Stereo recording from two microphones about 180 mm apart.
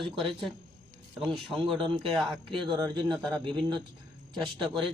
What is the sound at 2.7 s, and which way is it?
Speech, 25° right (ahead or behind).